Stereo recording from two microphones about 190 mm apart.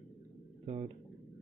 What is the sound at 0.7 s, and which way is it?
Speech, 35° right (ahead or behind).